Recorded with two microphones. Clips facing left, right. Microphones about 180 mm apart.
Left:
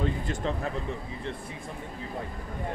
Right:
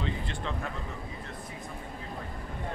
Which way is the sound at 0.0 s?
40° left (ahead or behind).